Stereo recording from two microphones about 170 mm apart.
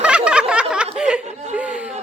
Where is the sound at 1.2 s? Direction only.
45° right (ahead or behind).